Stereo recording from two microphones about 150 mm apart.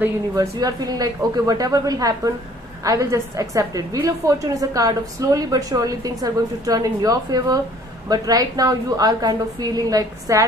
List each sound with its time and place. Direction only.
0.4 s a woman's voice: 25° right (ahead or behind)